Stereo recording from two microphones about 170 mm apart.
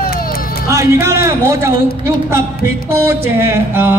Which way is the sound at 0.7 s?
15° right (ahead or behind).